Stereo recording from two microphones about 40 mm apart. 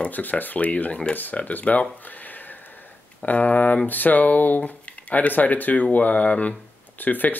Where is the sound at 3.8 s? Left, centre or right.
Left.